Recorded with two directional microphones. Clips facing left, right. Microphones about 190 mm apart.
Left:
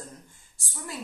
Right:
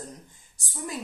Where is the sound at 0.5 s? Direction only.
20° right (ahead or behind).